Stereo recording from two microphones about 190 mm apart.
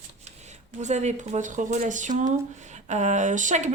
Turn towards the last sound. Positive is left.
turn(degrees=-40)  # may be behind; listen again after turning